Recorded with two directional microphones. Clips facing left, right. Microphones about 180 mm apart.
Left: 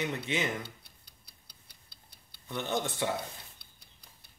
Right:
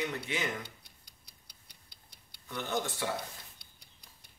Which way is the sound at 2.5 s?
20° left (ahead or behind).